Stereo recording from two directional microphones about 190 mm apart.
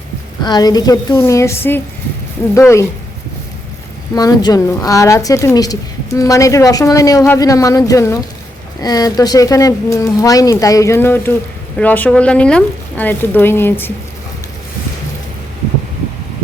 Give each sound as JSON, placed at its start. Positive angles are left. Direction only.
{"t": 0.4, "sound": "a woman's voice", "side_deg": 20}
{"t": 4.1, "sound": "a woman's voice", "side_deg": 20}